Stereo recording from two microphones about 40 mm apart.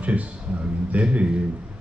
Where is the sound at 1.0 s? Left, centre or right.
Right.